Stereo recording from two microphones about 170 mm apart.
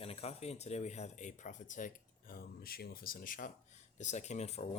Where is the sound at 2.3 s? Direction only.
60° left (ahead or behind).